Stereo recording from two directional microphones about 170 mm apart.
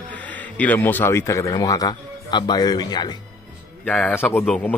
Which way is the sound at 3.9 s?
10° left (ahead or behind).